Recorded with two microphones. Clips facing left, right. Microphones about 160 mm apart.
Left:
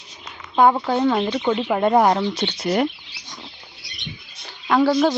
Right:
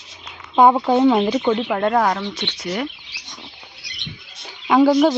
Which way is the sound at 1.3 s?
Centre (ahead or behind).